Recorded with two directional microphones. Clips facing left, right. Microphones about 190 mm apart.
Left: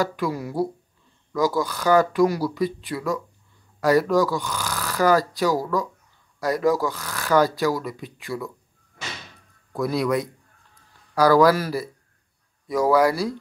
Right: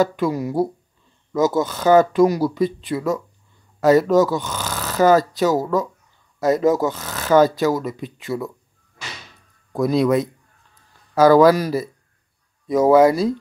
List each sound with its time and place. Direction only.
0.0 s speech: 20° right (ahead or behind)
9.7 s a man's voice: 20° right (ahead or behind)
10.7 s a sound: 25° right (ahead or behind)
12.6 s speech: 20° right (ahead or behind)